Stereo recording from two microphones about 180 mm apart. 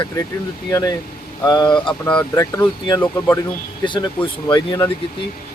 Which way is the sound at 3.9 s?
25° left (ahead or behind).